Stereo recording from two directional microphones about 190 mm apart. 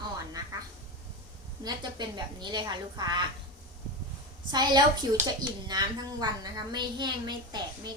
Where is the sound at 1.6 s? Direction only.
25° right (ahead or behind).